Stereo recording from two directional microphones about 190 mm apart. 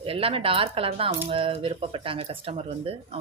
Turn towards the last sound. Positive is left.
turn(degrees=-30)  # may be behind; listen again after turning